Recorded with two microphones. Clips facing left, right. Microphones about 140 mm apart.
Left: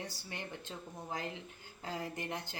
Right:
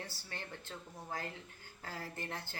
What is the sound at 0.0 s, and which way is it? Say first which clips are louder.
A woman's voice: left 3 dB; 15° left (ahead or behind).